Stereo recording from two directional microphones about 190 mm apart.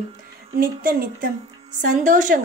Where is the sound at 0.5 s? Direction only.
50° right (ahead or behind).